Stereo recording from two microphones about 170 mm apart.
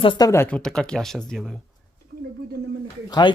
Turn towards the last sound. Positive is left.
turn(degrees=25)  # may be behind; listen again after turning